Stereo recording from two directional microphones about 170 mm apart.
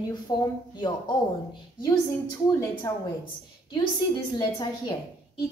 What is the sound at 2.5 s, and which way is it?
Speech, 20° left (ahead or behind).